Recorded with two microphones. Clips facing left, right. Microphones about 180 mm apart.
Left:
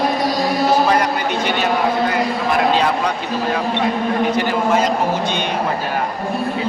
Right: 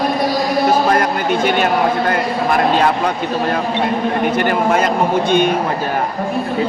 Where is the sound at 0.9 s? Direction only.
50° right (ahead or behind).